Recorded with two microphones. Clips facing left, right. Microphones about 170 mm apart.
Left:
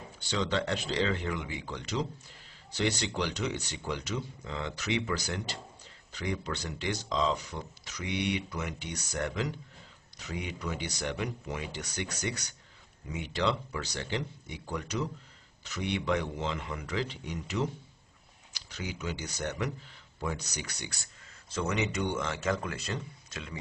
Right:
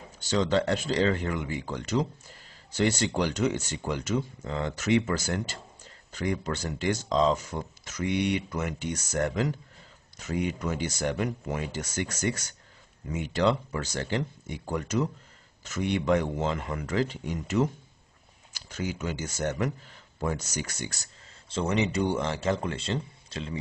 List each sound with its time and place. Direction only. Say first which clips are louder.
0.2 s speech: right 6 dB; 45° right (ahead or behind)
21.5 s a man's voice: right 4 dB; 30° right (ahead or behind)